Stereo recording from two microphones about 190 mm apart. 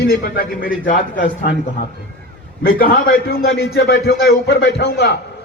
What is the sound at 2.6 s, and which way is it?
A man's voice, 50° left (ahead or behind).